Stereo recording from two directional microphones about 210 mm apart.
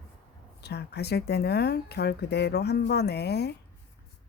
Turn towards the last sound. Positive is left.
turn(degrees=50)  # may be behind; listen again after turning